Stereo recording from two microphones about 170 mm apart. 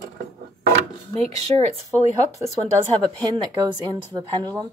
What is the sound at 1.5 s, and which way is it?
Speech, 30° right (ahead or behind).